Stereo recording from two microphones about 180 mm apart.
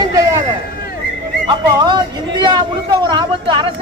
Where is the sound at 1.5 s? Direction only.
25° right (ahead or behind).